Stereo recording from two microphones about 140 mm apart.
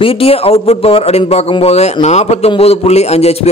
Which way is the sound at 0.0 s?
45° left (ahead or behind).